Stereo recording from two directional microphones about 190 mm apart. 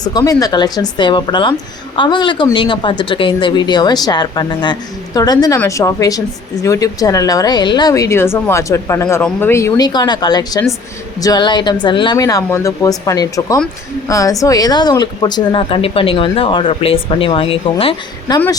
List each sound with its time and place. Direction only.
0.0 s a woman's voice: 20° left (ahead or behind)